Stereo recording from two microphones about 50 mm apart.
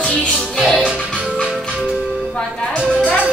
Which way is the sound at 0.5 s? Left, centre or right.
Centre.